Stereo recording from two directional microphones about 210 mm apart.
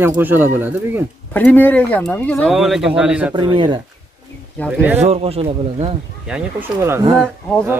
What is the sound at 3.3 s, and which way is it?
Speech, 20° right (ahead or behind).